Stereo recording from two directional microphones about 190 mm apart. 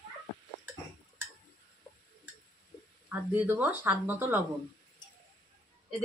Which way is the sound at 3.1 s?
10° right (ahead or behind).